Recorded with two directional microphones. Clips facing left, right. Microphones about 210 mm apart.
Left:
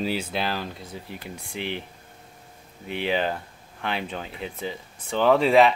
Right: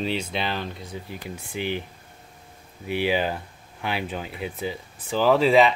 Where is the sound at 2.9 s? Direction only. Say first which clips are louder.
Right 2 dB; 5° right (ahead or behind).